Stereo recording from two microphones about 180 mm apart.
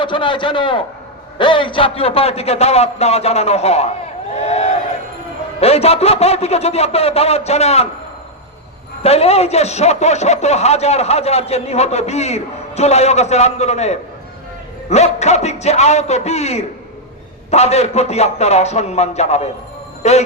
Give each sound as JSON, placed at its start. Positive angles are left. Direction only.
{"t": 0.0, "sound": "a man's voice", "side_deg": 25}
{"t": 4.4, "sound": "crowd", "side_deg": 35}
{"t": 5.5, "sound": "a man's voice", "side_deg": 35}
{"t": 9.0, "sound": "a man's voice", "side_deg": 35}